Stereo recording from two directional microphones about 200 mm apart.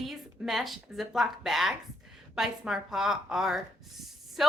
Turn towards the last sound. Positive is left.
turn(degrees=0)  # may be behind; listen again after turning